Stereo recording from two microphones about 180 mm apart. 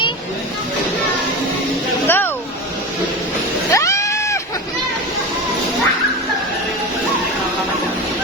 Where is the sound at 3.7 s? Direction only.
15° left (ahead or behind).